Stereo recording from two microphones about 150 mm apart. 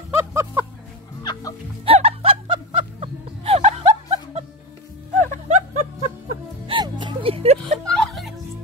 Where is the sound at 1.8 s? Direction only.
40° right (ahead or behind).